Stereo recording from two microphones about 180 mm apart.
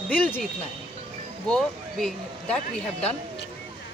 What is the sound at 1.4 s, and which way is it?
Speech, 5° left (ahead or behind).